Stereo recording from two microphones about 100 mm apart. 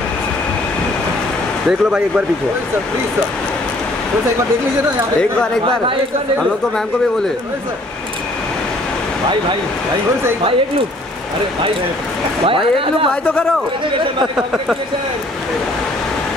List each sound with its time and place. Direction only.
1.7 s speech: 10° right (ahead or behind)
12.4 s speech: 65° right (ahead or behind)
13.1 s speech: 10° left (ahead or behind)